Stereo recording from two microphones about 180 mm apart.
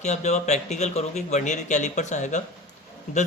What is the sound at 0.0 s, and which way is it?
Speech, 40° left (ahead or behind).